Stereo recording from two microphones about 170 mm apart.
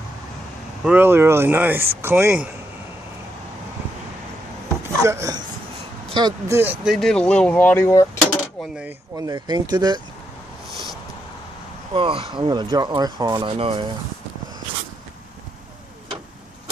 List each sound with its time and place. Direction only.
0.8 s speech: 10° right (ahead or behind)
5.0 s speech: 20° right (ahead or behind)
6.8 s speech: centre (ahead or behind); by 8.2 s 15° left (ahead or behind)
9.1 s speech: 20° right (ahead or behind)
11.9 s speech: 30° right (ahead or behind)